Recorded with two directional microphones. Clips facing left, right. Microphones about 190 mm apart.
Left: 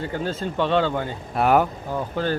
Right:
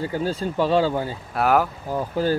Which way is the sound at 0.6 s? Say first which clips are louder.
Right 1 dB; 10° right (ahead or behind).